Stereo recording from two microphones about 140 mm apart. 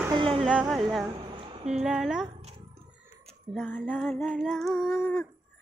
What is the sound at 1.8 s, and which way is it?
Music, 5° right (ahead or behind).